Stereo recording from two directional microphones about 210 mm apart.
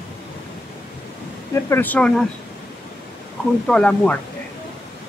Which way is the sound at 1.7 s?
10° left (ahead or behind).